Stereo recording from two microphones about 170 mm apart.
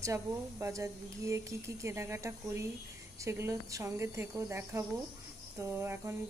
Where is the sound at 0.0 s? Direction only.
15° right (ahead or behind).